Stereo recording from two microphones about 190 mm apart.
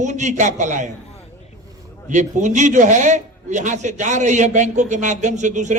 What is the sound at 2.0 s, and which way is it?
A man's voice, 40° right (ahead or behind).